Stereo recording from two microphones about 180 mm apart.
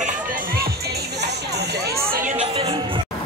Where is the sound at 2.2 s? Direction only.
35° right (ahead or behind).